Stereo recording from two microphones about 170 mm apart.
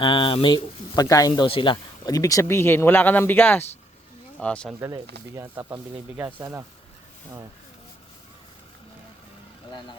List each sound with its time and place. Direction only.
0.0 s speech: 30° left (ahead or behind)
1.5 s speech: 30° left (ahead or behind); by 4.7 s 5° left (ahead or behind)
5.3 s speech: 15° right (ahead or behind)